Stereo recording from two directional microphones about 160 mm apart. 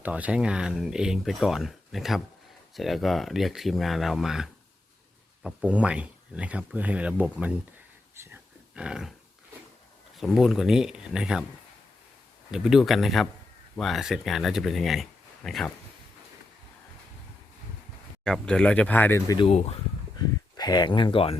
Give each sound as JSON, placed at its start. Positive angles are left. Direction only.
{"t": 0.0, "sound": "speech", "side_deg": -10}
{"t": 8.2, "sound": "dog", "side_deg": -10}
{"t": 10.2, "sound": "speech", "side_deg": 0}
{"t": 12.5, "sound": "speech", "side_deg": -5}
{"t": 18.3, "sound": "speech", "side_deg": 5}
{"t": 19.5, "sound": "speech", "side_deg": 40}
{"t": 20.1, "sound": "speech", "side_deg": 25}